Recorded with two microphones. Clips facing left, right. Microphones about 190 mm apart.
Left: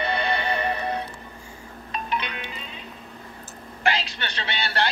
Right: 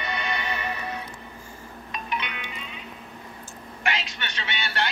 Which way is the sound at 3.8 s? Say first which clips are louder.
Left 4 dB; 35° left (ahead or behind).